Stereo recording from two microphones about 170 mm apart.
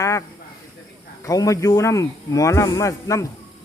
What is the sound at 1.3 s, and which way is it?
Speech, 20° left (ahead or behind).